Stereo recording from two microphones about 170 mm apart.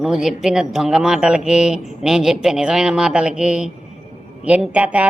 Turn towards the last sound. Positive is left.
turn(degrees=-10)  # may be behind; listen again after turning